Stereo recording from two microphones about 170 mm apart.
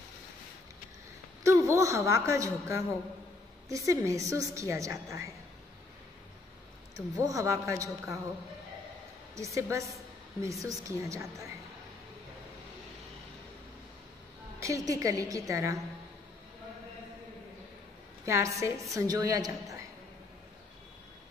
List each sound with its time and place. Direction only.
1.4 s a woman's voice: 15° right (ahead or behind)
7.2 s a woman's voice: 20° right (ahead or behind)
9.3 s a woman's voice: 15° right (ahead or behind)
14.6 s a woman's voice: 20° right (ahead or behind)
18.2 s a woman's voice: 15° right (ahead or behind)